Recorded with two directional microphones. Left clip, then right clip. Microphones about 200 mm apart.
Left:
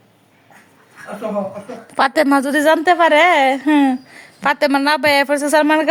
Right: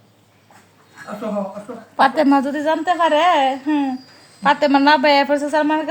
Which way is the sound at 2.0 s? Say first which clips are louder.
Even; 40° left (ahead or behind).